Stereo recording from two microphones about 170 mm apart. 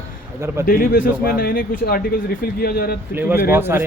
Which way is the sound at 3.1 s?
10° right (ahead or behind).